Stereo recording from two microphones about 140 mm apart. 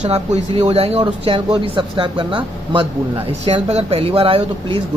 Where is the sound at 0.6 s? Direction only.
45° right (ahead or behind).